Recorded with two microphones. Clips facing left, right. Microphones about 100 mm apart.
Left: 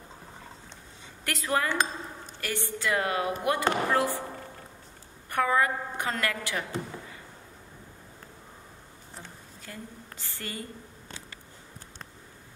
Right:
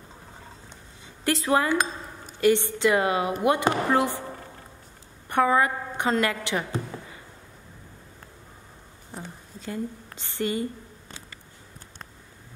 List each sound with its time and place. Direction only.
1.2 s speech: 30° right (ahead or behind)
1.7 s speech: 10° right (ahead or behind)
2.4 s speech: 20° right (ahead or behind)
5.3 s speech: 25° right (ahead or behind)
9.2 s a sound: 20° right (ahead or behind)